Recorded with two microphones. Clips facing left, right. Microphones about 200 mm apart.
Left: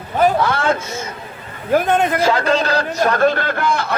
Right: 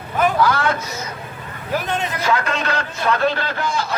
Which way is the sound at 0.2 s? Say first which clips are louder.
Left 2 dB; 25° left (ahead or behind).